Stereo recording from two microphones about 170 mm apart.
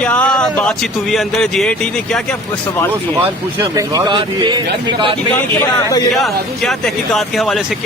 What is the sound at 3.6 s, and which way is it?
A man's voice, 25° right (ahead or behind).